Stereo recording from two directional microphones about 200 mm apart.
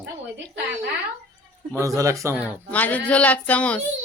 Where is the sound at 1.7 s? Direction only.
15° right (ahead or behind).